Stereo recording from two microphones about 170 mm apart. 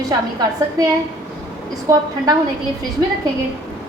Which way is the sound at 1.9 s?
20° right (ahead or behind).